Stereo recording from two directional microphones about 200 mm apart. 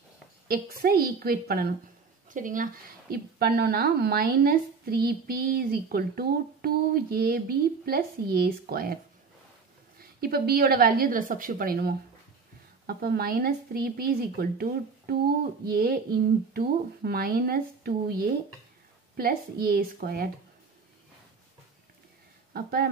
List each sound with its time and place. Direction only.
0.5 s speech: 50° right (ahead or behind)
9.9 s speech: 50° right (ahead or behind)
22.5 s speech: 50° right (ahead or behind)